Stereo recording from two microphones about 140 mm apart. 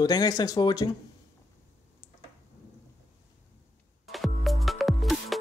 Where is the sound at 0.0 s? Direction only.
30° left (ahead or behind).